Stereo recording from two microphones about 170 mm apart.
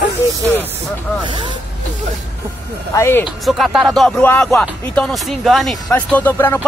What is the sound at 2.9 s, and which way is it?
Speech, 15° left (ahead or behind).